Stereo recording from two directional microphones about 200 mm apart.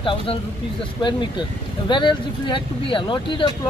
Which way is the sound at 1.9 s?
25° left (ahead or behind).